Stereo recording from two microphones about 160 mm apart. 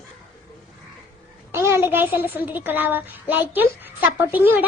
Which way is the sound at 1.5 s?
15° right (ahead or behind).